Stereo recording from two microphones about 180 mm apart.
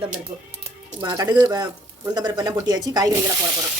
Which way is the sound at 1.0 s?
20° right (ahead or behind).